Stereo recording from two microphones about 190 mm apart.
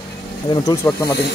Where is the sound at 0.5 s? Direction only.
15° left (ahead or behind).